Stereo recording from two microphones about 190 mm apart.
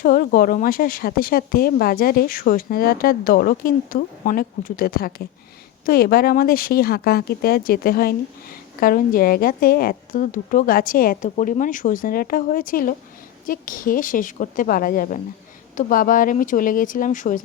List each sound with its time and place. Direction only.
0.0 s a woman's voice: 50° left (ahead or behind)